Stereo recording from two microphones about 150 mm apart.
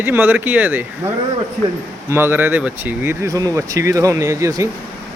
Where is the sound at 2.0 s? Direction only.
15° right (ahead or behind).